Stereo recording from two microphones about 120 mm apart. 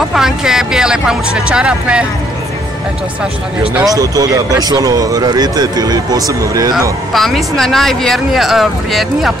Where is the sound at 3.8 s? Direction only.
30° right (ahead or behind).